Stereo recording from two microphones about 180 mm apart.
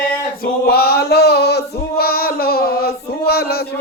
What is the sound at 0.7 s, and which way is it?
Male singing, 60° left (ahead or behind).